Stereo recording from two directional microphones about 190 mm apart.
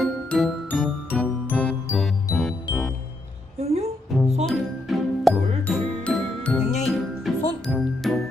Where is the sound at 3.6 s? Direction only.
35° right (ahead or behind).